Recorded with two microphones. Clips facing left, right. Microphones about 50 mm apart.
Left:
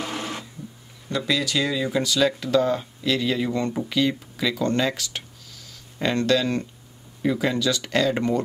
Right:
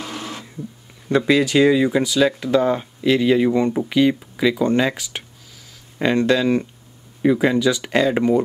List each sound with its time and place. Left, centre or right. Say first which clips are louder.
0.0 s printer: even; centre
1.0 s speech: right 8 dB; right; by 8.4 s centre